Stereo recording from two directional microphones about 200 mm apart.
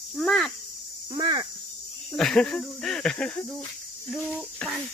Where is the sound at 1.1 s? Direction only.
20° right (ahead or behind).